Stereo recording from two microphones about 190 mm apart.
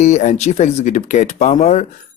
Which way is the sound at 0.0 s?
40° left (ahead or behind).